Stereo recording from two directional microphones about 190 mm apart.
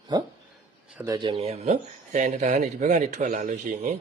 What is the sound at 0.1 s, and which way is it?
Speech, 20° right (ahead or behind).